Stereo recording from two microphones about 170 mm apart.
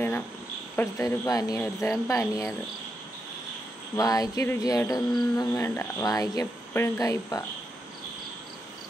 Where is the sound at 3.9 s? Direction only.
20° left (ahead or behind).